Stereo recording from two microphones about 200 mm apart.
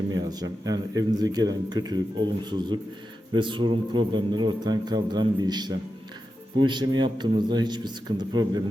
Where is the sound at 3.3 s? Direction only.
25° right (ahead or behind).